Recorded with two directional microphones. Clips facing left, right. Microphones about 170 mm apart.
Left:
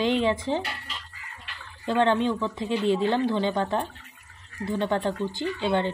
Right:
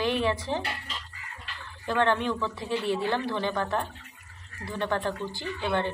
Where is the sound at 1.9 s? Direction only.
20° left (ahead or behind).